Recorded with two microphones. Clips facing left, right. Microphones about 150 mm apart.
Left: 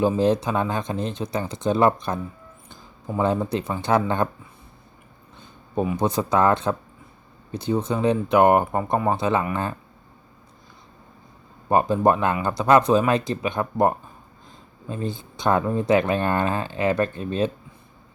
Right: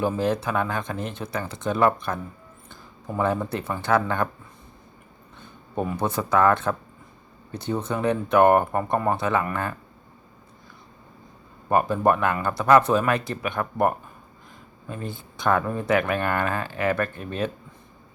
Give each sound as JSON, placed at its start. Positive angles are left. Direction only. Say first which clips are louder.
{"t": 0.0, "sound": "speech", "louder": "left 4 dB", "side_deg": 20}
{"t": 3.2, "sound": "speech", "louder": "left 2 dB", "side_deg": 20}
{"t": 5.4, "sound": "speech", "louder": "left 3 dB", "side_deg": 10}
{"t": 11.7, "sound": "speech", "louder": "left 2 dB", "side_deg": 20}